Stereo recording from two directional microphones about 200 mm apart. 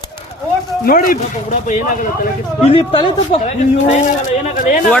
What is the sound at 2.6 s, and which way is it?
A man's voice, 25° left (ahead or behind).